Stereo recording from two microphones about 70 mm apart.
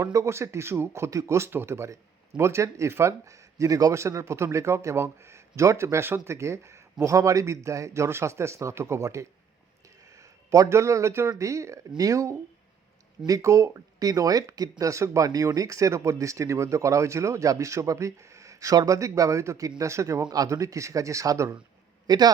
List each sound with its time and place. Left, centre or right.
0.0 s speech: right
3.9 s speech: right
20.2 s speech: right
20.5 s speech: right
22.0 s speech: right